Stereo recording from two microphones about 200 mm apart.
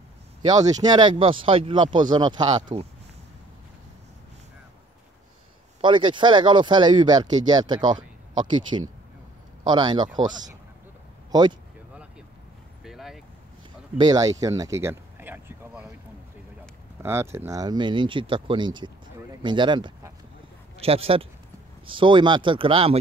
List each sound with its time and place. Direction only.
0.8 s speech: 25° right (ahead or behind)
5.8 s speech: 25° right (ahead or behind)
12.8 s vehicle: centre (ahead or behind)
13.9 s speech: 20° right (ahead or behind)
14.4 s a sound: 15° right (ahead or behind)
17.0 s speech: 10° right (ahead or behind); by 22.9 s 30° right (ahead or behind)